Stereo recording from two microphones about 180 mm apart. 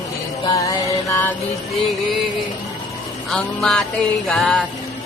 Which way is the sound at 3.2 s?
Centre (ahead or behind).